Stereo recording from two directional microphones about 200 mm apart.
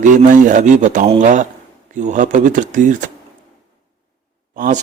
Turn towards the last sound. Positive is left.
turn(degrees=-45)  # may be behind; listen again after turning